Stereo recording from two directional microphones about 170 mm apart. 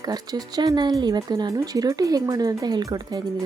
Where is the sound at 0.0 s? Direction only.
20° right (ahead or behind).